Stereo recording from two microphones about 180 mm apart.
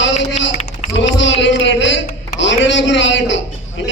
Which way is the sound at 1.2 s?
90° left.